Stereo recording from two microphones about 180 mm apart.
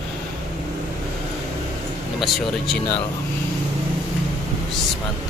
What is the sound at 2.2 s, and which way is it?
Speech, centre (ahead or behind).